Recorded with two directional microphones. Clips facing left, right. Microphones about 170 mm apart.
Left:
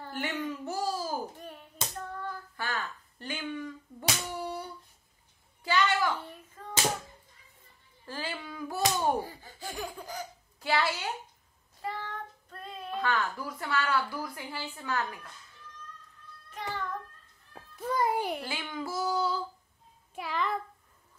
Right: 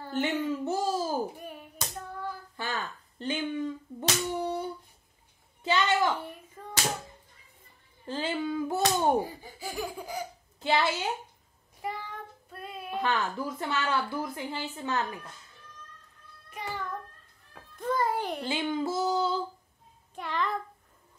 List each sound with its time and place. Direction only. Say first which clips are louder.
0.1 s a woman's voice: right 6 dB; 25° right (ahead or behind)
1.2 s speech: right 5 dB; 10° right (ahead or behind)
2.5 s speech: even; 20° right (ahead or behind)
4.4 s humming: right 5 dB; 20° right (ahead or behind)
5.6 s a child's voice: right 2 dB; 25° right (ahead or behind)
6.6 s hands: left 1 dB; 10° right (ahead or behind)
8.0 s speech: right 7 dB; 25° right (ahead or behind)
10.6 s a woman's voice: right 3 dB; 20° right (ahead or behind)
11.8 s child singing: even; 15° right (ahead or behind)
13.0 s a woman's voice: right 2 dB; 25° right (ahead or behind)
16.4 s music: even; 10° right (ahead or behind)
17.7 s music: even; 10° left (ahead or behind)
18.5 s a woman's voice: right 7 dB; 25° right (ahead or behind)
20.2 s a child's voice: right 1 dB; 5° left (ahead or behind)